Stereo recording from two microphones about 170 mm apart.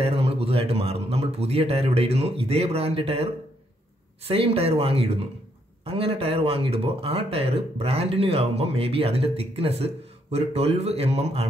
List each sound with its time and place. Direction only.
0.0 s speech: 35° right (ahead or behind)
4.3 s speech: 35° right (ahead or behind)